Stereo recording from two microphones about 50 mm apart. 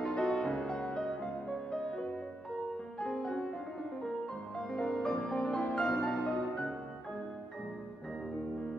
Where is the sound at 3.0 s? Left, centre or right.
Centre.